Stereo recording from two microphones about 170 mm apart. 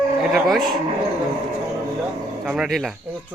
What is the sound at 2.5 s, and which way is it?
Speech, centre (ahead or behind).